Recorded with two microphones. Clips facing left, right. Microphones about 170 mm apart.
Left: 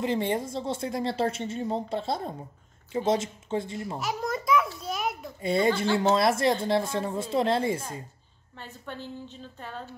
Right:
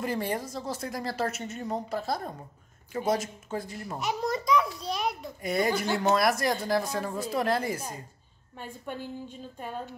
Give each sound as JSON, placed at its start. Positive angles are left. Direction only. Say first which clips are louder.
{"t": 0.0, "sound": "speech", "louder": "left 3 dB", "side_deg": 25}
{"t": 4.0, "sound": "a child's voice", "louder": "right 3 dB", "side_deg": 0}
{"t": 5.4, "sound": "speech", "louder": "left 3 dB", "side_deg": 25}
{"t": 8.5, "sound": "a woman's voice", "louder": "right 2 dB", "side_deg": -15}